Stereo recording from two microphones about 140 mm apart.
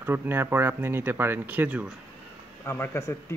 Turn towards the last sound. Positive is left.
turn(degrees=15)  # may be behind; listen again after turning